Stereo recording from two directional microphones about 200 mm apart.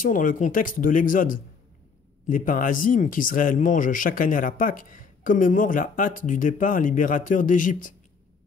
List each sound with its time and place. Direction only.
0.0 s speech: 40° left (ahead or behind)